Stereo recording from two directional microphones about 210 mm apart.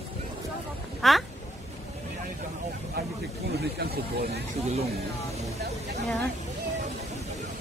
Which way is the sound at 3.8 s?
50° right (ahead or behind).